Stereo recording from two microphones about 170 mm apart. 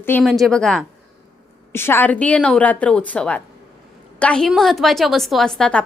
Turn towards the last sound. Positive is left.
turn(degrees=5)  # may be behind; listen again after turning